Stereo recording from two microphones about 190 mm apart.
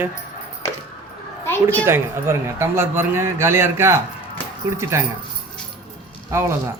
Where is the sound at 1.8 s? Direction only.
15° right (ahead or behind).